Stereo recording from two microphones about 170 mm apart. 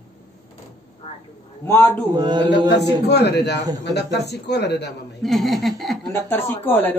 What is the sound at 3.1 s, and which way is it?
A man's voice, 75° left (ahead or behind).